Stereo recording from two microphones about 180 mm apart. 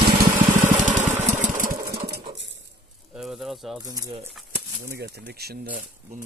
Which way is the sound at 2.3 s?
85° right.